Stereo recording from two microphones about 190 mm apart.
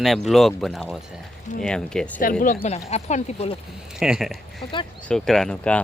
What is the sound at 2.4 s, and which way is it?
Speech, 45° left (ahead or behind).